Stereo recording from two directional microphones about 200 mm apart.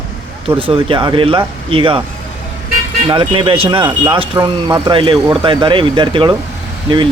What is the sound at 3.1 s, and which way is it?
Speech, 25° right (ahead or behind).